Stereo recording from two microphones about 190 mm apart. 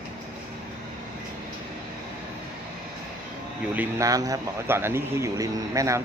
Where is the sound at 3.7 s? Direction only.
15° right (ahead or behind).